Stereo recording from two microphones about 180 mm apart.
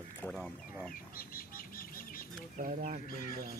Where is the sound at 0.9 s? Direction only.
55° left (ahead or behind).